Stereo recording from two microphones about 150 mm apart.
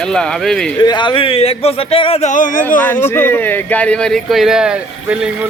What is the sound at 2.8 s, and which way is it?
Speech, 15° left (ahead or behind).